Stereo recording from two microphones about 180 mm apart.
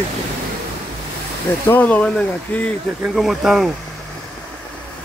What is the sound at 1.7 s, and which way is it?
Speech, 10° left (ahead or behind).